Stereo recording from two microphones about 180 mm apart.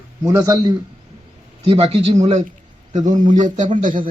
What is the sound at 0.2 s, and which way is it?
Speech, 20° right (ahead or behind).